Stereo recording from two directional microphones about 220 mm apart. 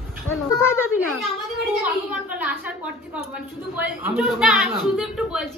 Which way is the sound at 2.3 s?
5° right (ahead or behind).